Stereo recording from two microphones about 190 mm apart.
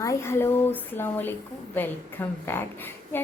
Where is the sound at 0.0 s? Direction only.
15° left (ahead or behind).